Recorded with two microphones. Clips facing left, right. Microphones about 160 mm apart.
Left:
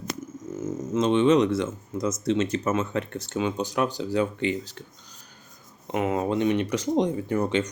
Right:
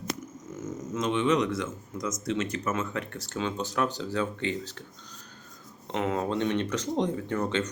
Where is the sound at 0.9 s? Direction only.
25° left (ahead or behind).